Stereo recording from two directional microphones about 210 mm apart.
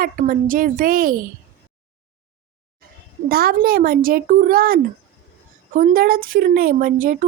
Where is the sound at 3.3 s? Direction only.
45° right (ahead or behind).